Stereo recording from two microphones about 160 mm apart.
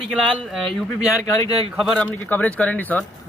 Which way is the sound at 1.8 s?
Centre (ahead or behind).